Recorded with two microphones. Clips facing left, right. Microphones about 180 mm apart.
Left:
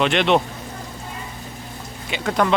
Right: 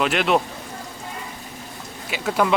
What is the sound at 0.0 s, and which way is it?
Speech, 5° right (ahead or behind).